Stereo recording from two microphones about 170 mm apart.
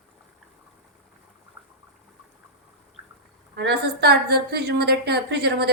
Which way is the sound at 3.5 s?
75° right (ahead or behind).